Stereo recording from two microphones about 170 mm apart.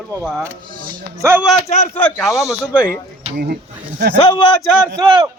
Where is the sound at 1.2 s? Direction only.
15° right (ahead or behind).